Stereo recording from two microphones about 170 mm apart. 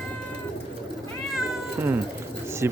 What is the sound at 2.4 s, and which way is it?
Bird, 15° right (ahead or behind).